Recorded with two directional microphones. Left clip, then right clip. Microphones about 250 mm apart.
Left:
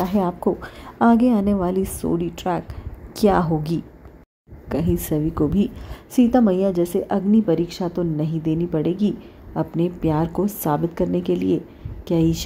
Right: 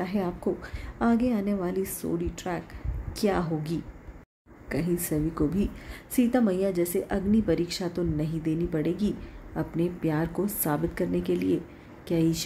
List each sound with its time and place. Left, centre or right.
0.0 s a woman's voice: centre